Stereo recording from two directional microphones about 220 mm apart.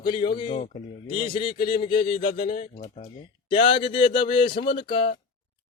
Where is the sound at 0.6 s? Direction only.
35° left (ahead or behind).